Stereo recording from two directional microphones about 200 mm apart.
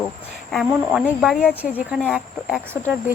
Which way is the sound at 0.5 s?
Centre (ahead or behind).